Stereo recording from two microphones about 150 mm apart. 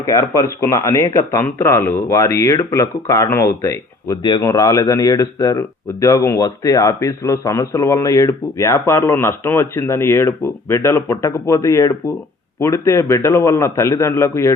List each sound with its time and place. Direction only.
0.0 s speech: 25° left (ahead or behind)